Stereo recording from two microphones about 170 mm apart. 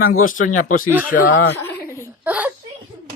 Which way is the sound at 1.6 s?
15° left (ahead or behind).